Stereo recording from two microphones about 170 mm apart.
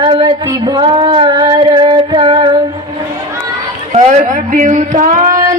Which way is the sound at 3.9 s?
40° right (ahead or behind).